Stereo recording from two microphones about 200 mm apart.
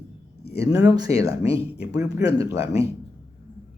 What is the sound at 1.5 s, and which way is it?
Speech, 15° right (ahead or behind).